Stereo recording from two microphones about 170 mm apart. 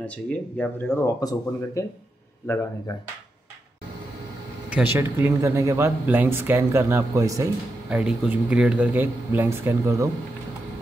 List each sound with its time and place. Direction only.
0.0 s speech: 5° left (ahead or behind)
2.9 s speech: 25° left (ahead or behind)
4.6 s speech: 10° right (ahead or behind)
7.9 s speech: 5° right (ahead or behind)